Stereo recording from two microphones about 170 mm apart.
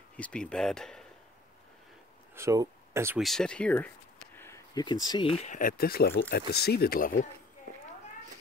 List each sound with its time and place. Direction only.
0.2 s speech: 5° left (ahead or behind)
2.3 s speech: 20° right (ahead or behind)
3.2 s speech: centre (ahead or behind)
4.4 s a sound: 15° left (ahead or behind)
4.8 s speech: 25° left (ahead or behind)
5.5 s speech: 55° left (ahead or behind)